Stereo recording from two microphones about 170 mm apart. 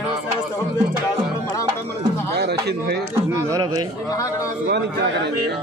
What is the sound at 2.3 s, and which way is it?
Music, 75° right (ahead or behind).